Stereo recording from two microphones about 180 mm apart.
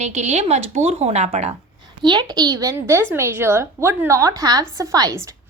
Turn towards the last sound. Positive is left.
turn(degrees=-20)  # may be behind; listen again after turning